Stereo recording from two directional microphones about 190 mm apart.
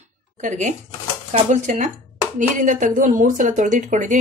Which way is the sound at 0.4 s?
40° right (ahead or behind).